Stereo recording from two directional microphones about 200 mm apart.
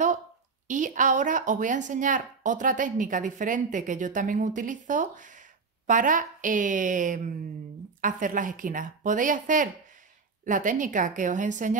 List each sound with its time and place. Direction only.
0.7 s a woman's voice: 40° right (ahead or behind)